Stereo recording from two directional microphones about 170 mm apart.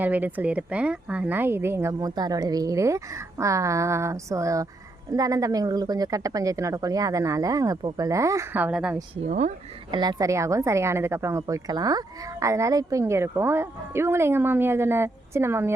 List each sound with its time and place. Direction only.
0.0 s a woman's voice: 10° right (ahead or behind)
9.2 s speech: 45° right (ahead or behind)
9.9 s a woman's voice: 25° right (ahead or behind)